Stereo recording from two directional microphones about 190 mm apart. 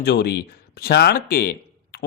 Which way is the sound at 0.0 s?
60° left (ahead or behind).